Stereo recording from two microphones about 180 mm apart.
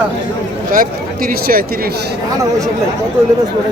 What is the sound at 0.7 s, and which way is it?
Speech, 55° right (ahead or behind).